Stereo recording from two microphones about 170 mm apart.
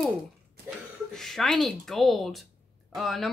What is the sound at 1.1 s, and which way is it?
Speech, centre (ahead or behind).